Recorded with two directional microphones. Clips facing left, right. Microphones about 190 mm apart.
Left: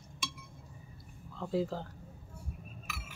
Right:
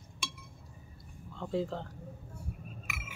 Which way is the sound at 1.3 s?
5° left (ahead or behind).